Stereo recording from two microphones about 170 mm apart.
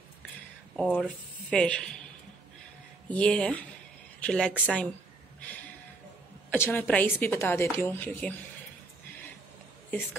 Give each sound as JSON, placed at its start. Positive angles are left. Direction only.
{"t": 0.7, "sound": "speech", "side_deg": 5}
{"t": 3.1, "sound": "a woman's voice", "side_deg": 5}
{"t": 6.5, "sound": "a woman's voice", "side_deg": 10}